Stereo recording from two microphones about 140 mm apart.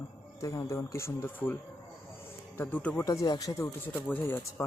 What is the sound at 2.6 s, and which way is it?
Speech, 10° left (ahead or behind).